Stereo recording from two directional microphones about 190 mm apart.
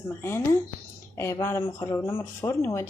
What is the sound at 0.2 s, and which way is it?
Speech, 15° left (ahead or behind).